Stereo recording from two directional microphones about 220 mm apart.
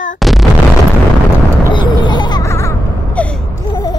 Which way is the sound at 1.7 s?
20° left (ahead or behind).